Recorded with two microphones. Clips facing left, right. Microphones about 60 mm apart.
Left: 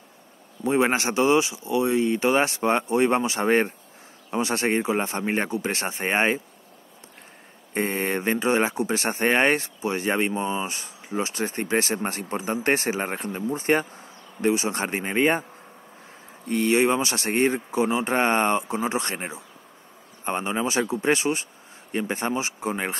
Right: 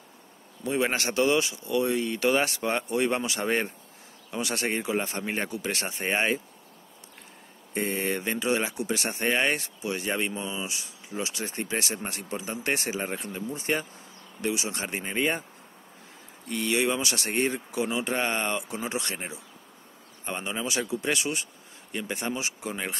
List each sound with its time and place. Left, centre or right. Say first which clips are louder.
0.7 s speech: left 5 dB; left
7.7 s speech: left 3 dB; left
16.4 s speech: left 6 dB; left